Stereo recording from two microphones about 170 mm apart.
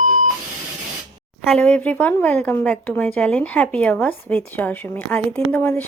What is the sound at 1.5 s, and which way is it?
Speech, 5° left (ahead or behind).